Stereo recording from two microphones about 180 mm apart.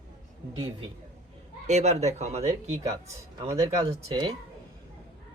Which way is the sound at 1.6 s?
40° right (ahead or behind).